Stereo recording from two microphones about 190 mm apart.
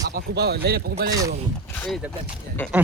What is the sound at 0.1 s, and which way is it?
Speech, 55° right (ahead or behind).